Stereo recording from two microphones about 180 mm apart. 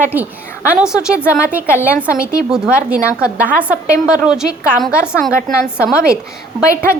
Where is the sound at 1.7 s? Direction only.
15° left (ahead or behind).